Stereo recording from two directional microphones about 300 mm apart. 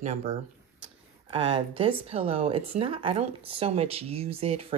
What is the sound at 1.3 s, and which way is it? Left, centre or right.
Speech, centre.